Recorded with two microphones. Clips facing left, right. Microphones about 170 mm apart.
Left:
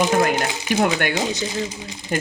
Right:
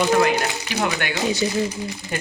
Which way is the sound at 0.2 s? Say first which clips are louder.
Even; 50° left (ahead or behind).